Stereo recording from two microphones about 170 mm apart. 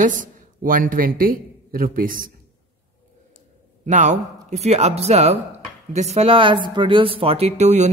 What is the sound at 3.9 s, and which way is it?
Speech, 45° right (ahead or behind).